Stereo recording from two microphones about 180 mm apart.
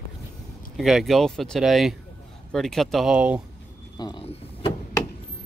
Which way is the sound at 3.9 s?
25° left (ahead or behind).